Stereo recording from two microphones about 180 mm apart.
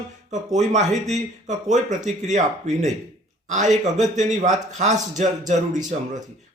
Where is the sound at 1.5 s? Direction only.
40° right (ahead or behind).